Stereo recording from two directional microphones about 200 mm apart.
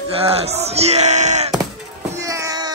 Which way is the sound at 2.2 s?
15° right (ahead or behind).